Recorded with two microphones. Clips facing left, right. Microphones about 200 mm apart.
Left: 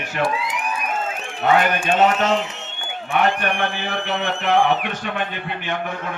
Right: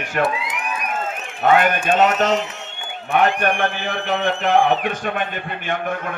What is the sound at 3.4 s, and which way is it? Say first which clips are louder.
A man's voice: right 3 dB; 50° right (ahead or behind).